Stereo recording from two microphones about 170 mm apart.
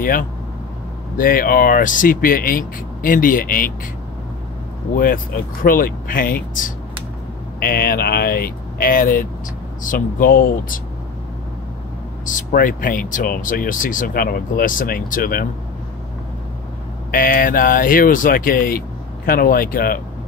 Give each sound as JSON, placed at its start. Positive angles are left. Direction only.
{"t": 0.0, "sound": "speech", "side_deg": 55}
{"t": 4.9, "sound": "speech", "side_deg": 55}
{"t": 12.3, "sound": "speech", "side_deg": 50}
{"t": 17.1, "sound": "speech", "side_deg": 55}